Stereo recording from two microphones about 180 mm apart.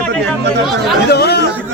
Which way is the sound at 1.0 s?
65° left (ahead or behind).